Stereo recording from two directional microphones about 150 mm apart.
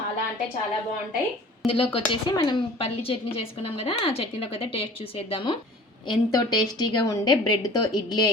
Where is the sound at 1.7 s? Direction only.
35° left (ahead or behind).